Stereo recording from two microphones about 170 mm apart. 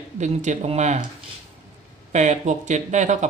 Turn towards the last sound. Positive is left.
turn(degrees=-45)  # may be behind; listen again after turning